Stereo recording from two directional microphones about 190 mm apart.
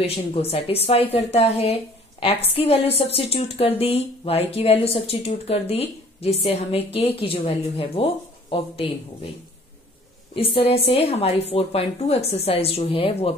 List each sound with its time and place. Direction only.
0.0 s speech: 30° left (ahead or behind)
10.3 s speech: 30° left (ahead or behind)